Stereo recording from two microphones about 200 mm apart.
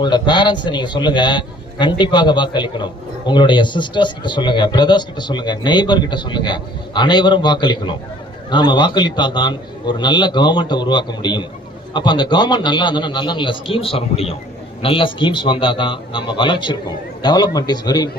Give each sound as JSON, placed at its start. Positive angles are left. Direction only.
{"t": 0.0, "sound": "a man's voice", "side_deg": 20}